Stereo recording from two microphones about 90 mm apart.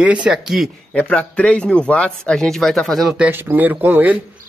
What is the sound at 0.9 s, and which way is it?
A man's voice, 15° left (ahead or behind).